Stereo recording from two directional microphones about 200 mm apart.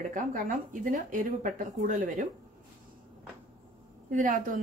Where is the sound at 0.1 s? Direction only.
40° right (ahead or behind).